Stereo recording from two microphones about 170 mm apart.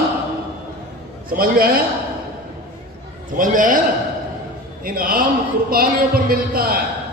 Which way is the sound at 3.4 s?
50° right (ahead or behind).